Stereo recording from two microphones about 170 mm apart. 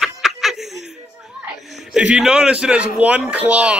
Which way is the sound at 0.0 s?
Centre (ahead or behind).